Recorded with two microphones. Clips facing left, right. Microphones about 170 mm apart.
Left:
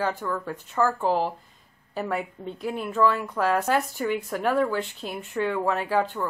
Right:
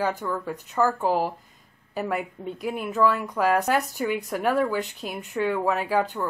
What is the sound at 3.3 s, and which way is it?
A woman's voice, 15° right (ahead or behind).